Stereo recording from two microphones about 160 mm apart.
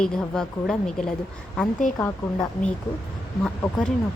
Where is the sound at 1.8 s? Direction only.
55° left (ahead or behind).